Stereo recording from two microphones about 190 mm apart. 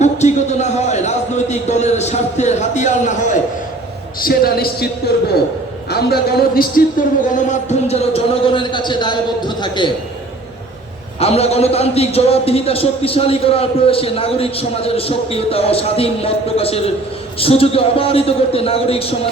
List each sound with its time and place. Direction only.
0.0 s a sound: 35° left (ahead or behind)
4.2 s a man's voice: 55° left (ahead or behind)
5.9 s a man's voice: 55° left (ahead or behind)
7.3 s a man's voice: 40° left (ahead or behind)
11.2 s a man's voice: 30° left (ahead or behind)